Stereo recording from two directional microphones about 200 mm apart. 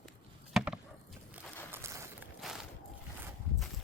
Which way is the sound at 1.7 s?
15° right (ahead or behind).